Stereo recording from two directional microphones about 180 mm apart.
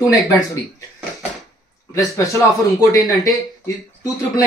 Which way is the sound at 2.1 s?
15° left (ahead or behind).